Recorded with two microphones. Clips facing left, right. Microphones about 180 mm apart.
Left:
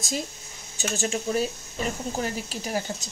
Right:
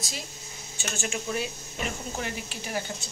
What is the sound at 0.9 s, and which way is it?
Speech, 35° left (ahead or behind).